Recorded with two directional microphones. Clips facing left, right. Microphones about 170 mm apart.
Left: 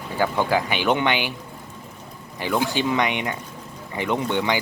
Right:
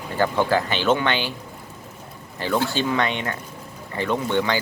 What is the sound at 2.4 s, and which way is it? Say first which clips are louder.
Speech: even; 15° left (ahead or behind).